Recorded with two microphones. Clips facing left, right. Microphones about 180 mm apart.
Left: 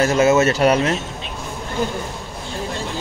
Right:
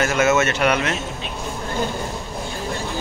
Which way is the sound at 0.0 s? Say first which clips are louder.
Left 3 dB; 35° left (ahead or behind).